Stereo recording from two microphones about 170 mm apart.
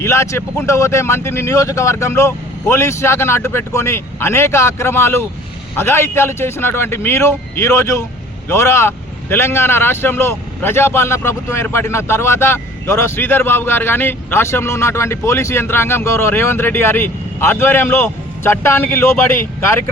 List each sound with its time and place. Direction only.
0.0 s speech: 15° left (ahead or behind)